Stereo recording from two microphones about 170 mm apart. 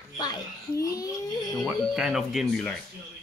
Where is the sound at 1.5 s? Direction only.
Centre (ahead or behind).